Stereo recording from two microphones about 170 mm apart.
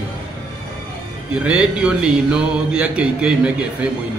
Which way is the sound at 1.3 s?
5° right (ahead or behind).